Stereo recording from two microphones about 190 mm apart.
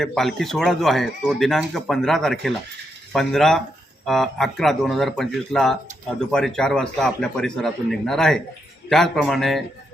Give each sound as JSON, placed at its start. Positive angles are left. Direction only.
{"t": 0.0, "sound": "speech", "side_deg": 0}